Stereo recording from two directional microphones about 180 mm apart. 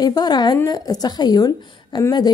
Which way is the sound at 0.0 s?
20° left (ahead or behind).